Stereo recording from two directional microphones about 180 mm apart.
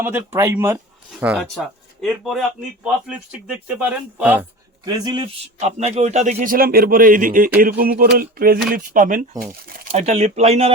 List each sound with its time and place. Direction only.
0.0 s speech: 15° right (ahead or behind)
1.4 s speech: centre (ahead or behind)
4.9 s a man's voice: 25° right (ahead or behind)
5.5 s speech: 40° right (ahead or behind)
7.6 s a sound: 55° right (ahead or behind)
8.7 s speech: 50° right (ahead or behind)
9.9 s speech: 35° right (ahead or behind)